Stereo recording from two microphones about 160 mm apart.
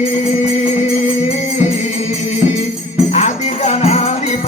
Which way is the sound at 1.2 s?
45° left (ahead or behind).